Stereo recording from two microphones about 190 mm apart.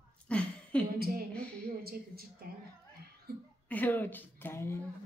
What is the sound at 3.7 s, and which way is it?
Speech, 10° left (ahead or behind).